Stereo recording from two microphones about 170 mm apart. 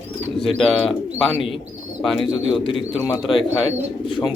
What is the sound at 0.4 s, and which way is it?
Speech, 5° left (ahead or behind).